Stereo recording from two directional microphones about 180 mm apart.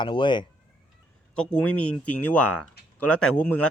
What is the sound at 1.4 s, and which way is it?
Speech, 5° left (ahead or behind).